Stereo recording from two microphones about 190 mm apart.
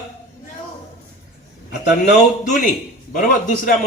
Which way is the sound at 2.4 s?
40° left (ahead or behind).